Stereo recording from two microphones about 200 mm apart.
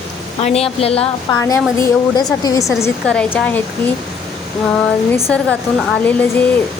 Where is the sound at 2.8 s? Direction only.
10° left (ahead or behind).